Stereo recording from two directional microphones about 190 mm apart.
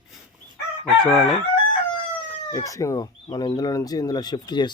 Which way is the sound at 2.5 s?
15° left (ahead or behind).